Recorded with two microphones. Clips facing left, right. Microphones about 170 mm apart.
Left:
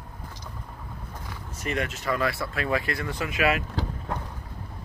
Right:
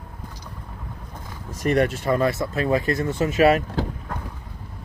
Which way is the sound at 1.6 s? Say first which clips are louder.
Right 9 dB; 35° right (ahead or behind).